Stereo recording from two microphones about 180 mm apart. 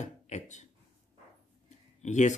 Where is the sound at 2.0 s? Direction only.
40° left (ahead or behind).